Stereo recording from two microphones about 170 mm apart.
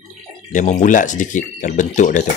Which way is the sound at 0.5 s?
50° left (ahead or behind).